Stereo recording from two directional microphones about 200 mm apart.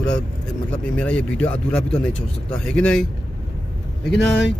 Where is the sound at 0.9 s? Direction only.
5° left (ahead or behind).